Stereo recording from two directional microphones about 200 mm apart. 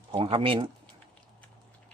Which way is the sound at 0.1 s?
25° right (ahead or behind).